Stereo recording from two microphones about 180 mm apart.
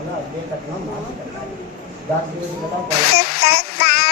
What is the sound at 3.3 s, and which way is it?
Child singing, 60° left (ahead or behind).